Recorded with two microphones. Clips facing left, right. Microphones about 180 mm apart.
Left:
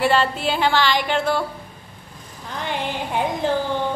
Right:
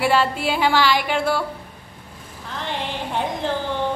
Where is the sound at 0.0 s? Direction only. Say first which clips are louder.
Even; 10° right (ahead or behind).